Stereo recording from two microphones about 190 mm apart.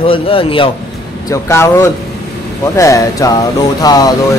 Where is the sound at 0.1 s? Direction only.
30° left (ahead or behind).